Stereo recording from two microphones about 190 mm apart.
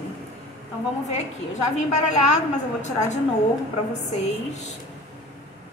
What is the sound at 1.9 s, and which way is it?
A woman's voice, 40° left (ahead or behind).